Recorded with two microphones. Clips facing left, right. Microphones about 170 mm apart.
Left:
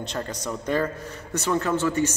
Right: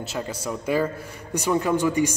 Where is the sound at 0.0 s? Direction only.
5° right (ahead or behind).